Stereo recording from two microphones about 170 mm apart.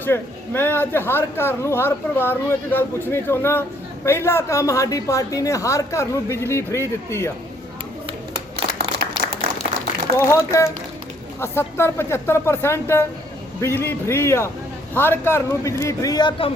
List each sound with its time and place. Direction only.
0.0 s a man's voice: 15° left (ahead or behind)
8.5 s a sound: 65° right (ahead or behind)
10.2 s a man's voice: 15° left (ahead or behind)